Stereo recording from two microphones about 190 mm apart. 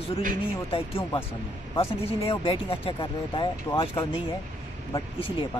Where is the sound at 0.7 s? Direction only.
30° left (ahead or behind).